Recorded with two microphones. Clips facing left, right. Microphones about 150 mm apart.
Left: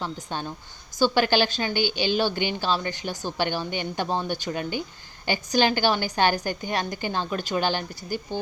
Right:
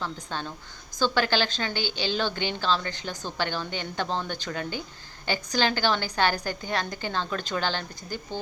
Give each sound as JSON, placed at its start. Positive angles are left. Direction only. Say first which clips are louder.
{"t": 0.0, "sound": "a woman's voice", "louder": "left 2 dB", "side_deg": 15}